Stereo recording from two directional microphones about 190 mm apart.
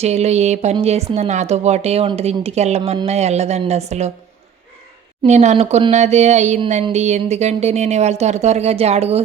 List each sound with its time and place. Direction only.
0.0 s speech: 35° right (ahead or behind)
5.2 s speech: 35° right (ahead or behind)